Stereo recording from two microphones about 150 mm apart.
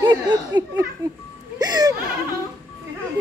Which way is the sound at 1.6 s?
25° right (ahead or behind).